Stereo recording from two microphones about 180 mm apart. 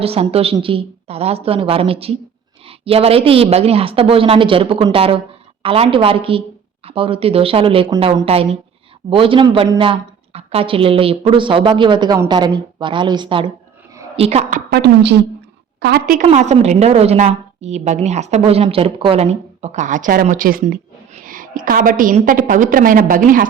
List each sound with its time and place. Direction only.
0.0 s a woman's voice: 35° right (ahead or behind)
14.7 s a woman's voice: 65° right (ahead or behind)
16.2 s a woman's voice: 40° right (ahead or behind)